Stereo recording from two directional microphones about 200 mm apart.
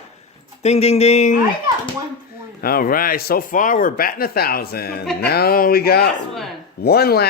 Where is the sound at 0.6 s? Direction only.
30° left (ahead or behind).